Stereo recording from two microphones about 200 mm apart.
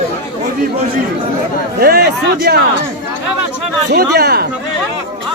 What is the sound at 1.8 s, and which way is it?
Speech, 50° right (ahead or behind).